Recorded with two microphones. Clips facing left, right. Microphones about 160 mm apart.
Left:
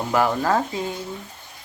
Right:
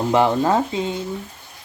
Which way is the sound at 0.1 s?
25° right (ahead or behind).